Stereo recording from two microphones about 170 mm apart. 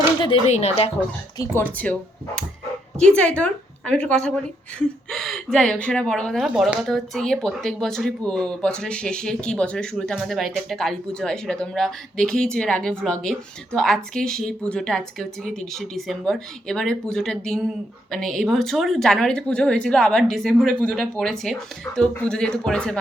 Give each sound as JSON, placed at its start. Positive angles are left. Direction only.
{"t": 0.4, "sound": "speech", "side_deg": 40}
{"t": 1.4, "sound": "a woman's voice", "side_deg": 10}
{"t": 3.0, "sound": "a woman's voice", "side_deg": 5}